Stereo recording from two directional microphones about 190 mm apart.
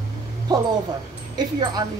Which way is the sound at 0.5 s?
20° right (ahead or behind).